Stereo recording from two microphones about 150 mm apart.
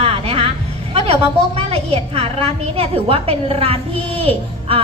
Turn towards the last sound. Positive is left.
turn(degrees=-40)  # may be behind; listen again after turning